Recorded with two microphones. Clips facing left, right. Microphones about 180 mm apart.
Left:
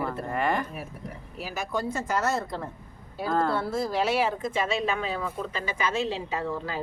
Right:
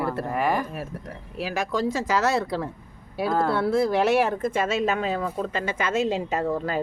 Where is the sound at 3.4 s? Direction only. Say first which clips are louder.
Right 6 dB; 65° right (ahead or behind).